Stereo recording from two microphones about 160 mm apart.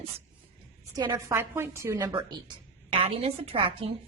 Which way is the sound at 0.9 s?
20° right (ahead or behind).